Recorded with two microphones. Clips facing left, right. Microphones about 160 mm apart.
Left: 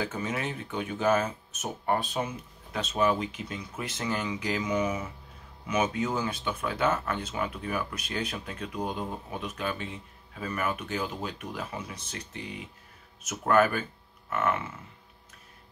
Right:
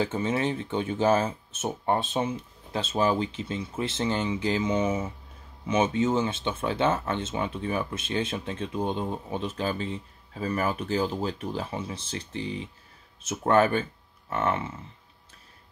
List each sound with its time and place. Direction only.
0.0 s speech: 30° right (ahead or behind)